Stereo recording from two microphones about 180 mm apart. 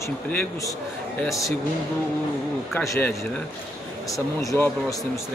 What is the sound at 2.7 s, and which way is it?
Speech, 10° left (ahead or behind).